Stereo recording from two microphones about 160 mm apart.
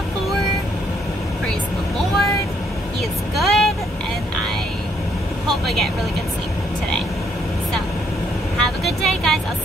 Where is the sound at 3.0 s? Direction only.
Centre (ahead or behind).